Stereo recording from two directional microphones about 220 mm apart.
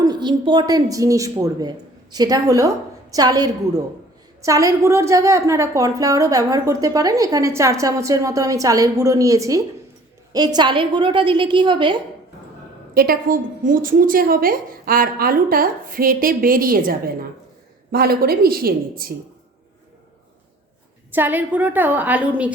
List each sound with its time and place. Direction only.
0.0 s a woman's voice: 20° right (ahead or behind)
12.9 s a woman's voice: 45° right (ahead or behind)
21.1 s a woman's voice: 10° right (ahead or behind)